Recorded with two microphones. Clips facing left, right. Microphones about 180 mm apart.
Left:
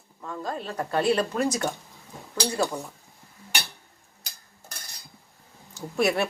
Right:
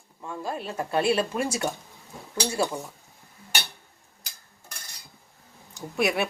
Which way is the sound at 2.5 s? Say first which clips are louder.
Even; 10° right (ahead or behind).